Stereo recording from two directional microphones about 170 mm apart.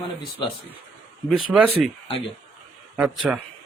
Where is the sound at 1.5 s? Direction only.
5° right (ahead or behind).